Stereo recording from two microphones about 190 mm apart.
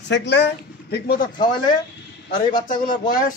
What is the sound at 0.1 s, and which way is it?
Speech, 65° left (ahead or behind).